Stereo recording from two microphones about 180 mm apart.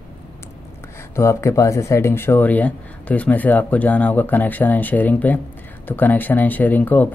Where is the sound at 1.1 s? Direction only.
15° left (ahead or behind).